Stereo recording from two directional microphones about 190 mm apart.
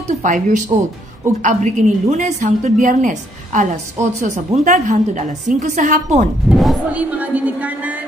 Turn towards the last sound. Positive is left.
turn(degrees=-10)  # may be behind; listen again after turning